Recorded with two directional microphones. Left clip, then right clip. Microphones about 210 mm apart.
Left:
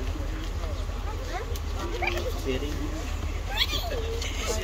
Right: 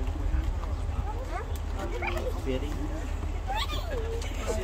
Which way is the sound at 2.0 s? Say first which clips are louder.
Left 4 dB; 50° right (ahead or behind).